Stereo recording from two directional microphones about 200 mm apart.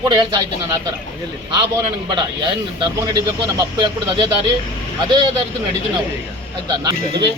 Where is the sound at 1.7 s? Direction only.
20° right (ahead or behind).